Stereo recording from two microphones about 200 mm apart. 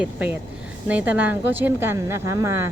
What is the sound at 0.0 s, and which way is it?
A woman's voice, 5° right (ahead or behind).